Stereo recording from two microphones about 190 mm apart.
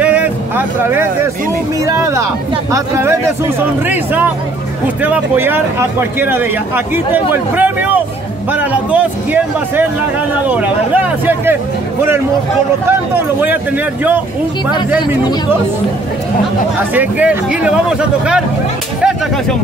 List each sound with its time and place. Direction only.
0.0 s vehicle: 10° right (ahead or behind)
1.9 s speech: 15° right (ahead or behind)
16.9 s speech: 10° right (ahead or behind)